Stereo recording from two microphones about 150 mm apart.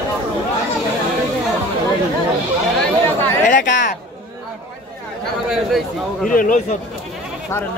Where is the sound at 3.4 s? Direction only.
60° left (ahead or behind).